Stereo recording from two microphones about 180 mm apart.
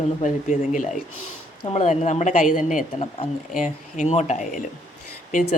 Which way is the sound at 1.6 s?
35° left (ahead or behind).